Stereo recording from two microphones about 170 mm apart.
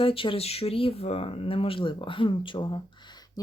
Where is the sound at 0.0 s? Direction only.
30° left (ahead or behind).